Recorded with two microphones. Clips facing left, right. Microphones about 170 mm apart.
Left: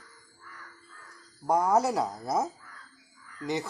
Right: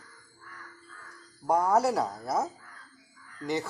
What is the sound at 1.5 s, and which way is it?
Speech, 15° left (ahead or behind).